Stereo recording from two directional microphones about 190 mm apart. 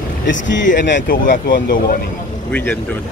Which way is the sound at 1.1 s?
45° left (ahead or behind).